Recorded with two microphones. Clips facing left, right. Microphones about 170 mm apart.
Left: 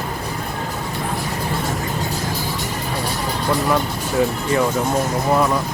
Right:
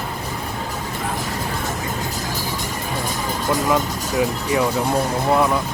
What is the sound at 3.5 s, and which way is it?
Speech, 20° right (ahead or behind).